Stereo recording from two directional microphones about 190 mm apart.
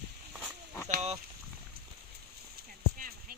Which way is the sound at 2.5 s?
50° right (ahead or behind).